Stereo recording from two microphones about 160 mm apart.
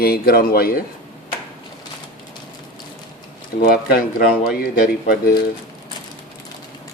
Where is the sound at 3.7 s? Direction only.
70° left (ahead or behind).